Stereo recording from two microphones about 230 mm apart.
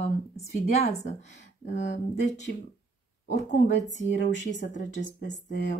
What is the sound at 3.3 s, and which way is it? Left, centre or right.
Speech, left.